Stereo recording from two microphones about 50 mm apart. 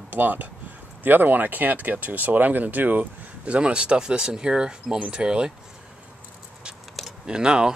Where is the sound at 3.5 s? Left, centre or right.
Right.